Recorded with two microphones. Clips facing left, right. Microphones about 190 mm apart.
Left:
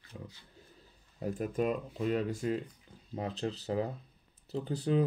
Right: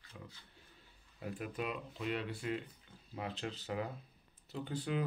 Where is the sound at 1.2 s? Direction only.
45° left (ahead or behind).